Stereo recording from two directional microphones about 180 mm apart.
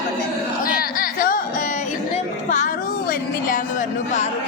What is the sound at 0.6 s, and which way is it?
Music, 50° left (ahead or behind).